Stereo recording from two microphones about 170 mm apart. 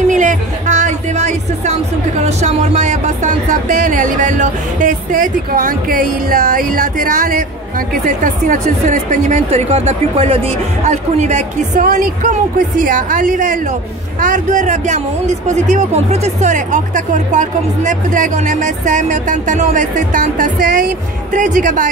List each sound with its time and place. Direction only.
0.1 s speech: 50° right (ahead or behind)